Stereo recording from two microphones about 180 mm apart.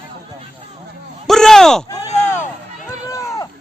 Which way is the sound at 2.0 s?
40° left (ahead or behind).